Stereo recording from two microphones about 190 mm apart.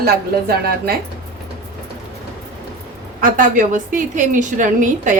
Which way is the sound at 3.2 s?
45° right (ahead or behind).